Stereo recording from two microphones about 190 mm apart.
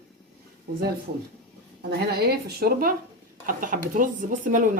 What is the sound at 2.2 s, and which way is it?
Speech, 55° right (ahead or behind).